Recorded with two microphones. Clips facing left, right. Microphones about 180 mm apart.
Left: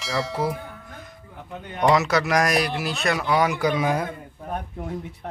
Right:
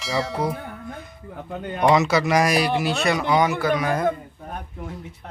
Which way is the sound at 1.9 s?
Centre (ahead or behind).